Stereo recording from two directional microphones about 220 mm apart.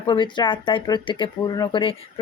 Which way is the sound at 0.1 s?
20° left (ahead or behind).